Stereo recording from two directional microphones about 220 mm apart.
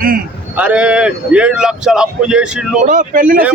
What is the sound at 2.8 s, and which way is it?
Speech, 35° right (ahead or behind).